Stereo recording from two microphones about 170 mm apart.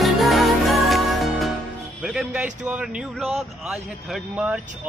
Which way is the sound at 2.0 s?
5° right (ahead or behind).